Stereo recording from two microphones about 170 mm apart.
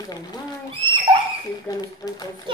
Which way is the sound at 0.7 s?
35° right (ahead or behind).